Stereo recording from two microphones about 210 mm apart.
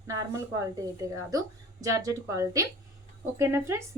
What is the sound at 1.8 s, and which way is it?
A woman's voice, 15° right (ahead or behind).